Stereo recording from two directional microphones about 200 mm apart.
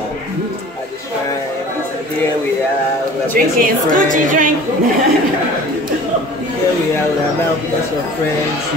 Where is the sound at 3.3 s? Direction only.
45° right (ahead or behind).